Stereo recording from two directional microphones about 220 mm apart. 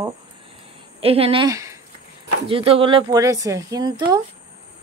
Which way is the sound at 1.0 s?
25° right (ahead or behind).